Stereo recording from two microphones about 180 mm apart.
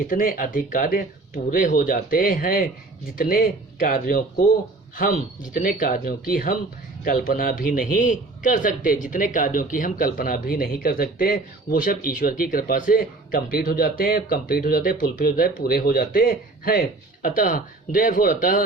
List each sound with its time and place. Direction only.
0.0 s a man's voice: 50° left (ahead or behind)